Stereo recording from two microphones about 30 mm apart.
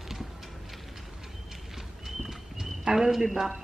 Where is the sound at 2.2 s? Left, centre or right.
Centre.